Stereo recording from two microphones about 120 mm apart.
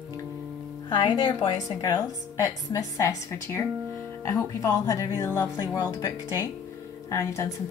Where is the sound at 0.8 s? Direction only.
40° left (ahead or behind).